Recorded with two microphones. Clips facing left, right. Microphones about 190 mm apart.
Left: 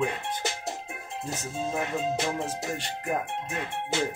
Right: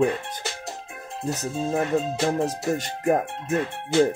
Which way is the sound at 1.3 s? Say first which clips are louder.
Right 6 dB; 40° right (ahead or behind).